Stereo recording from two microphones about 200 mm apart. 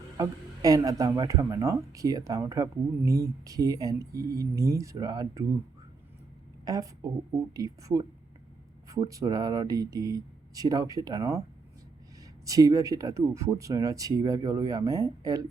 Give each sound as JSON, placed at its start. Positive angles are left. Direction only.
{"t": 0.2, "sound": "speech", "side_deg": -15}
{"t": 6.7, "sound": "speech", "side_deg": -15}